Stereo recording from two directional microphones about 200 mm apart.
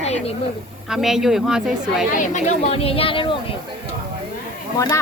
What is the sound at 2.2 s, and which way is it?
Speech, 35° left (ahead or behind).